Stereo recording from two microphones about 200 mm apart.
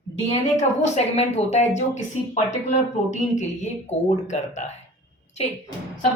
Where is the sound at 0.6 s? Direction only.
35° left (ahead or behind).